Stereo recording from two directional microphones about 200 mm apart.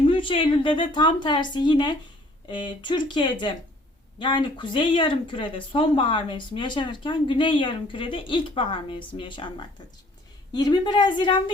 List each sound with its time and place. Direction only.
0.0 s speech: 25° left (ahead or behind)